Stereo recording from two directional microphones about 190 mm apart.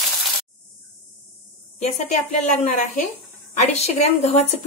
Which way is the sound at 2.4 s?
40° left (ahead or behind).